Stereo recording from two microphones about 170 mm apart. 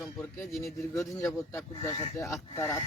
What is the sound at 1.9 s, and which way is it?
Speech, 40° left (ahead or behind).